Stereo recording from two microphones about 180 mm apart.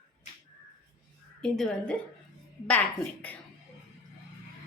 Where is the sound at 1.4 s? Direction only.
5° left (ahead or behind).